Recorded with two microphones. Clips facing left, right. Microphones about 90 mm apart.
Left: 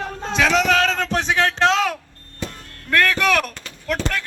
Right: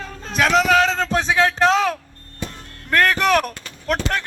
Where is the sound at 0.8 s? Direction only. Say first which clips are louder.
Right 2 dB; 20° right (ahead or behind).